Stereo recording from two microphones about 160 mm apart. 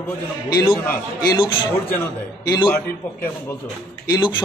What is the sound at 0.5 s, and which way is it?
Speech, 25° left (ahead or behind).